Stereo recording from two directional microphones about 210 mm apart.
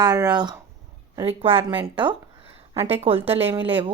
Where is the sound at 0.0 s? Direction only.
20° right (ahead or behind).